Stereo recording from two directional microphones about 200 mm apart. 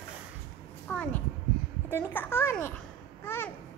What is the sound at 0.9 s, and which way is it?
A child's voice, 5° left (ahead or behind).